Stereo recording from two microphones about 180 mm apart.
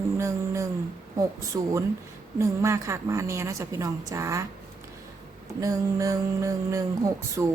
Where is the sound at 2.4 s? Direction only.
15° right (ahead or behind).